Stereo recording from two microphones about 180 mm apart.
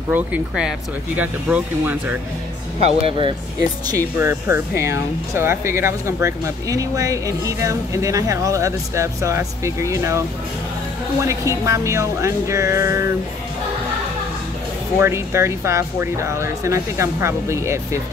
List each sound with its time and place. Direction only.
0.1 s speech: 5° right (ahead or behind)
3.0 s speech: 30° right (ahead or behind)
4.2 s speech: 15° right (ahead or behind)
11.2 s speech: 15° right (ahead or behind)
15.0 s speech: 15° right (ahead or behind)